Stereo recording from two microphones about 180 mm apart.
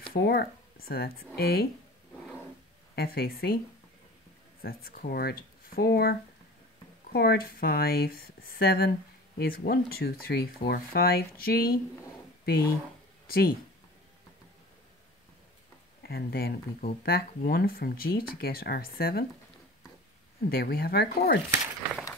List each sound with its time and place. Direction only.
0.1 s speech: 60° left (ahead or behind)
3.0 s speech: 60° left (ahead or behind)
4.6 s speech: 55° left (ahead or behind)
16.0 s speech: 60° left (ahead or behind)
20.4 s speech: 55° left (ahead or behind)